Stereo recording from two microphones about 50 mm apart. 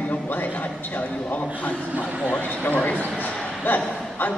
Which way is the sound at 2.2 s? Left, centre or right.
Left.